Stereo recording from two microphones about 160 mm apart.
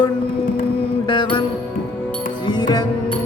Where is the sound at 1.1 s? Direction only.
30° left (ahead or behind).